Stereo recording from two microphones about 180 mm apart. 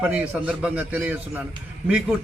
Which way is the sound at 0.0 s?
5° right (ahead or behind).